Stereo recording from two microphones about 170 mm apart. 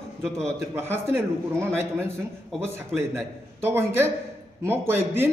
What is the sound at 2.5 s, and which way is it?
A man's voice, 15° right (ahead or behind).